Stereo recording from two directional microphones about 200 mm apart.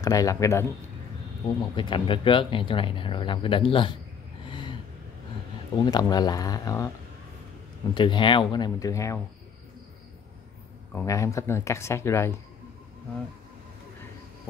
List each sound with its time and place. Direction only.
0.0 s speech: 15° left (ahead or behind)
1.8 s speech: 25° left (ahead or behind)
4.5 s vehicle: 25° left (ahead or behind)
5.8 s speech: 20° left (ahead or behind)
7.9 s speech: 25° left (ahead or behind)
10.9 s speech: 10° left (ahead or behind)